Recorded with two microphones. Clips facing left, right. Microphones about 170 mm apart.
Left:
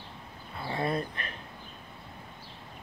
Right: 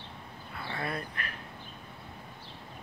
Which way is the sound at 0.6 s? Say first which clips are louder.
Left 5 dB; 25° left (ahead or behind).